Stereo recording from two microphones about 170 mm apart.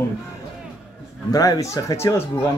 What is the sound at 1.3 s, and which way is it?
Speech, 20° left (ahead or behind).